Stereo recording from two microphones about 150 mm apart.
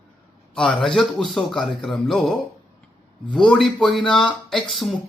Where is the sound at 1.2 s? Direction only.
30° left (ahead or behind).